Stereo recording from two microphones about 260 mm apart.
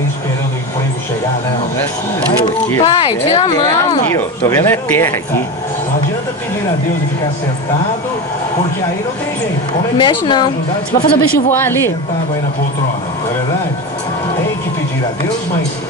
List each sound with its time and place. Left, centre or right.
2.8 s a woman's voice: centre
9.9 s a woman's voice: centre
11.2 s speech: left
11.5 s a woman's voice: centre